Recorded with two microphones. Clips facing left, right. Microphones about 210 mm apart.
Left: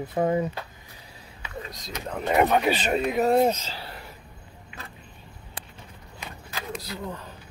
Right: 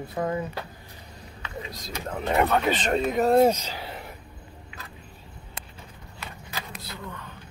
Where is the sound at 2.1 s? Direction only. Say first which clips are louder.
Left 1 dB; centre (ahead or behind).